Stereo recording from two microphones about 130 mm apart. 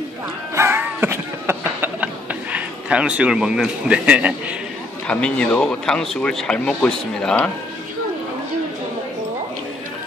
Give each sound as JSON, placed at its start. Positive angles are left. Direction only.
{"t": 0.6, "sound": "music", "side_deg": -15}
{"t": 2.5, "sound": "a man's voice", "side_deg": -10}
{"t": 5.0, "sound": "speech", "side_deg": 10}